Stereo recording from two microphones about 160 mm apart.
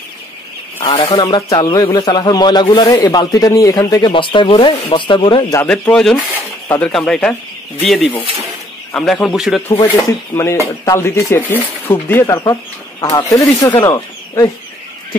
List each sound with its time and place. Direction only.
0.8 s speech: 30° left (ahead or behind)
5.6 s speech: 10° left (ahead or behind)
10.3 s speech: 15° left (ahead or behind)